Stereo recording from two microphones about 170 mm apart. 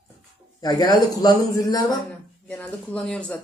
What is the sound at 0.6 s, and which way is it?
Speech, 25° left (ahead or behind).